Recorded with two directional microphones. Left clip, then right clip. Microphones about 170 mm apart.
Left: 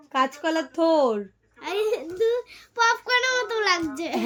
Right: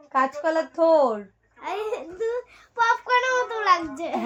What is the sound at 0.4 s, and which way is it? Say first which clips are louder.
Speech: right 2 dB; 5° left (ahead or behind).